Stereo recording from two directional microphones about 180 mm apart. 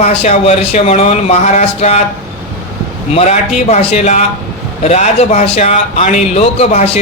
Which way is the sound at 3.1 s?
40° left (ahead or behind).